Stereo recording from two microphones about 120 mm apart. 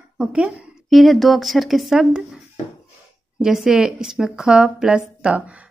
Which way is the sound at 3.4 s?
5° right (ahead or behind).